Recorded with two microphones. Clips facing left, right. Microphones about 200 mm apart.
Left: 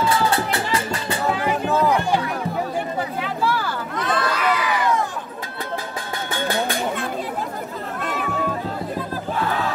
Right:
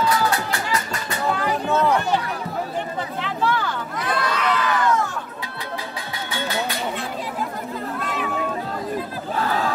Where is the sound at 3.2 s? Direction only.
5° left (ahead or behind).